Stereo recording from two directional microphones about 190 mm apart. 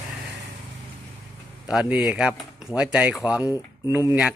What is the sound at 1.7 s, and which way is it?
Speech, 5° right (ahead or behind).